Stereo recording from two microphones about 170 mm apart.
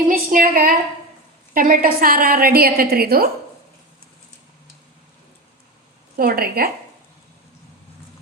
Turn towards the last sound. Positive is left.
turn(degrees=-60)  # may be behind; listen again after turning